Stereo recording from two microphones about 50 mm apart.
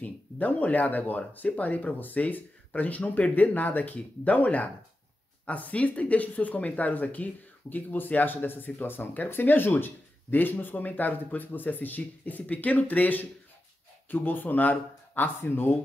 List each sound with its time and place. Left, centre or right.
0.0 s speech: left